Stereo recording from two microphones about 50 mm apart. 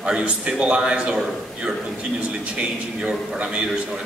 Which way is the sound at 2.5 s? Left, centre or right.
Centre.